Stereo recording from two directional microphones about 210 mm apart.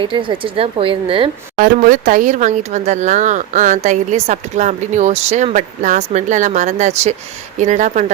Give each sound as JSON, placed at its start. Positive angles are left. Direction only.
{"t": 0.0, "sound": "speech", "side_deg": -25}
{"t": 1.5, "sound": "speech", "side_deg": -40}